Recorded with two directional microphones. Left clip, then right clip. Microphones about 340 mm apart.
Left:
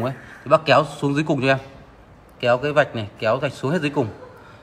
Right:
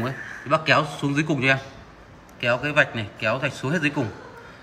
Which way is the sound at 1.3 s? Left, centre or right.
Centre.